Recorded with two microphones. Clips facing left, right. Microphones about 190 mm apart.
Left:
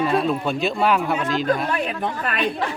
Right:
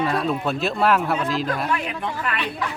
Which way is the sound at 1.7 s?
40° left (ahead or behind).